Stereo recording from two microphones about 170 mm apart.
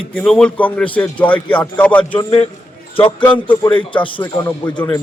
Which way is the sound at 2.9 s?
30° left (ahead or behind).